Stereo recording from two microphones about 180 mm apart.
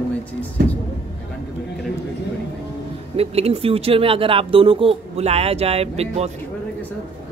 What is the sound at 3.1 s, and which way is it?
Speech, 35° right (ahead or behind).